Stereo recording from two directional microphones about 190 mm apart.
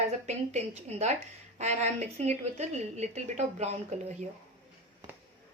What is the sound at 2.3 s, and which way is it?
A woman's voice, 35° right (ahead or behind).